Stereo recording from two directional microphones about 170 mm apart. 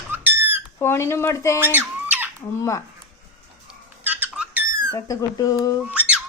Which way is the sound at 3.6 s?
10° right (ahead or behind).